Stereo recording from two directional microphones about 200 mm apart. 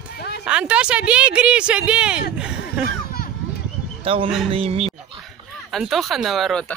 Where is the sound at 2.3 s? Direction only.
5° right (ahead or behind).